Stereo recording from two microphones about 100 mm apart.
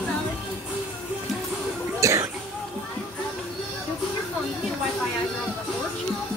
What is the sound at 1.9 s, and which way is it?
Cough, 30° right (ahead or behind).